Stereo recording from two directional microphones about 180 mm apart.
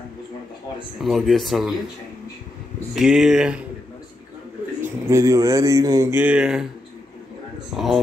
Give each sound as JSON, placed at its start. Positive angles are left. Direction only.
{"t": 0.9, "sound": "speech", "side_deg": 0}
{"t": 2.9, "sound": "speech", "side_deg": 0}
{"t": 4.8, "sound": "speech", "side_deg": -15}
{"t": 7.7, "sound": "speech", "side_deg": 0}